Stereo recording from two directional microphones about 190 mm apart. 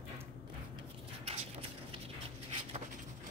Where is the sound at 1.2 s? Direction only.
30° right (ahead or behind).